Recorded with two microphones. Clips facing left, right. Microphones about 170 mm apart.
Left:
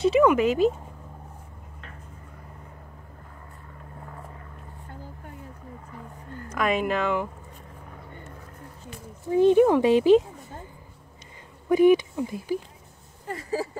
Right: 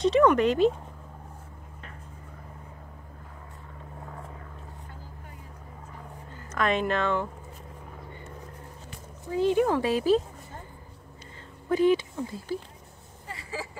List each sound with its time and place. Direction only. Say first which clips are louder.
0.0 s speech: left 1 dB; 5° left (ahead or behind)
6.5 s speech: left 1 dB; 10° left (ahead or behind)
9.3 s speech: left 6 dB; 20° left (ahead or behind)
11.7 s speech: left 5 dB; 15° left (ahead or behind)
13.3 s a sound: left 8 dB; 45° left (ahead or behind)